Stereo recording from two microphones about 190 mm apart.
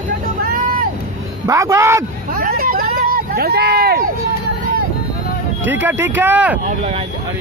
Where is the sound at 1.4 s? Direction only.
15° right (ahead or behind).